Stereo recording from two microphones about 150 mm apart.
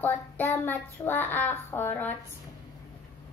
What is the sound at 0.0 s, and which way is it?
Child singing, 15° left (ahead or behind).